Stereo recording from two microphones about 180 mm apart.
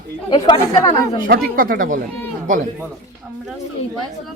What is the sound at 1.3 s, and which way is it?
Speech, 50° right (ahead or behind).